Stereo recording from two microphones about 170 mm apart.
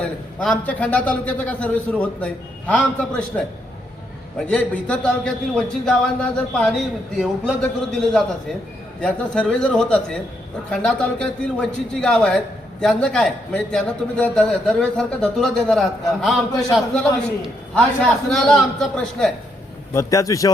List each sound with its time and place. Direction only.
0.6 s a man's voice: 10° left (ahead or behind)
19.9 s a man's voice: 20° left (ahead or behind)